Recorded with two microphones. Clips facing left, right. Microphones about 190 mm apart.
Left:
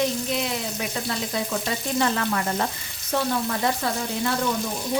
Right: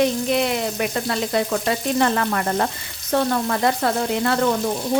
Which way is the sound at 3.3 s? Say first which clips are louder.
Right 4 dB; 60° right (ahead or behind).